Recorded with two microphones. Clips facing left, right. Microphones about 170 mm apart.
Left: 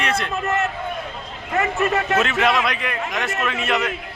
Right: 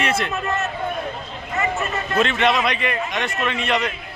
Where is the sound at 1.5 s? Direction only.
60° left (ahead or behind).